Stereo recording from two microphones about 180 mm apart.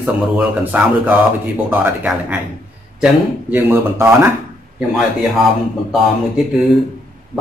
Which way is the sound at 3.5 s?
10° right (ahead or behind).